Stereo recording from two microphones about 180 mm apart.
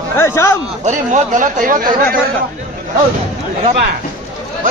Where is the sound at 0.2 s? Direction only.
15° left (ahead or behind).